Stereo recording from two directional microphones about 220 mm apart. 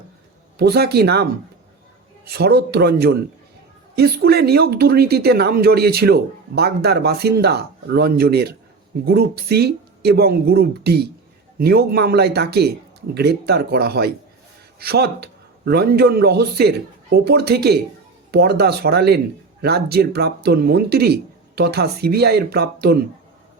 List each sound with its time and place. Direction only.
0.6 s speech: 45° right (ahead or behind)